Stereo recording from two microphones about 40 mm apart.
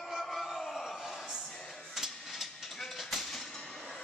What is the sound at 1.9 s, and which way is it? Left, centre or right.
Train, centre.